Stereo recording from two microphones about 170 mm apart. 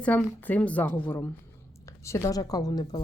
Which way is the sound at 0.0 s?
10° left (ahead or behind).